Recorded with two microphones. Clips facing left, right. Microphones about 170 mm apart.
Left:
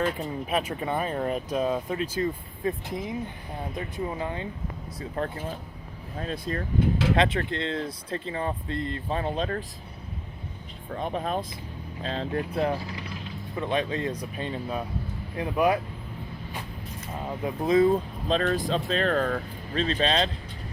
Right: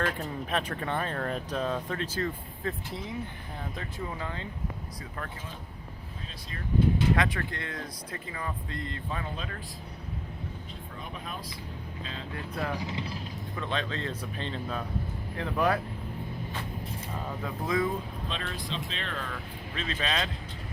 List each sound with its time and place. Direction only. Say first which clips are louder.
0.0 s speech: left 3 dB; 10° left (ahead or behind)
4.9 s speech: left 9 dB; 30° left (ahead or behind)
6.1 s speech: left 14 dB; 55° left (ahead or behind)
7.2 s speech: left 6 dB; 25° left (ahead or behind)
11.0 s speech: left 12 dB; 40° left (ahead or behind)
12.7 s speech: left 1 dB; 20° right (ahead or behind)
13.6 s speech: left 6 dB; 15° left (ahead or behind)
17.4 s speech: left 8 dB; 20° left (ahead or behind)
18.3 s speech: left 14 dB; 40° left (ahead or behind)